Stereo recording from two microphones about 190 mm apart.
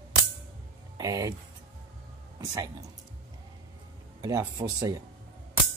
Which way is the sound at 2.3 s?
15° right (ahead or behind).